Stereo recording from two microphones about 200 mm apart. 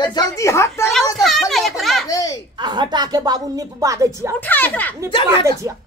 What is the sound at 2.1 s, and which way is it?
Speech, 15° left (ahead or behind).